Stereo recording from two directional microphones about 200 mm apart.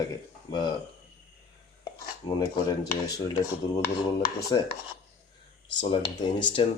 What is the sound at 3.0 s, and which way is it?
Speech, 20° left (ahead or behind).